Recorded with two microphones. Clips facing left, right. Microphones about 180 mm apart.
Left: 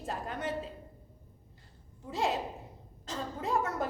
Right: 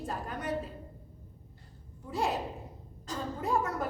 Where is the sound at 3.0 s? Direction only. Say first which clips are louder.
Right 1 dB; 20° left (ahead or behind).